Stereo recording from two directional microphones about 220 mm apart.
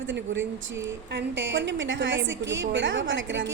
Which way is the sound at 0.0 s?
60° right (ahead or behind).